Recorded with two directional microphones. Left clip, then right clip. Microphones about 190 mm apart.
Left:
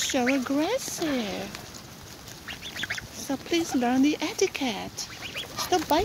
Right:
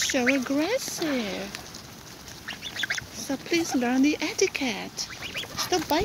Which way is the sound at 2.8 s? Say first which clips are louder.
Right 3 dB; 5° right (ahead or behind).